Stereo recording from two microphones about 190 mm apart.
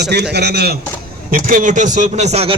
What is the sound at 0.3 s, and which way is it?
Speech, 60° right (ahead or behind).